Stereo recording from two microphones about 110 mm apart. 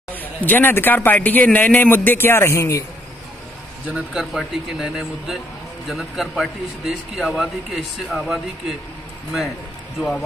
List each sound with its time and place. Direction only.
0.1 s a man's voice: 15° left (ahead or behind)
3.9 s speech: 10° right (ahead or behind)
9.9 s a man's voice: 5° left (ahead or behind)